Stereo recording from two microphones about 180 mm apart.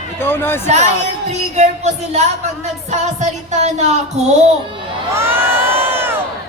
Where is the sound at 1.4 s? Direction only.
40° right (ahead or behind).